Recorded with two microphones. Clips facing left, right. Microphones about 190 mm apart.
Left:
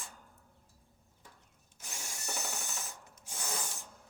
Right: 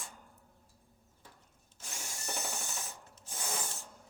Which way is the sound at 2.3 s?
10° right (ahead or behind).